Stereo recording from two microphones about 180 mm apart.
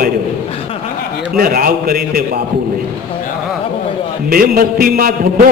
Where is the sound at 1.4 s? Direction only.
55° right (ahead or behind).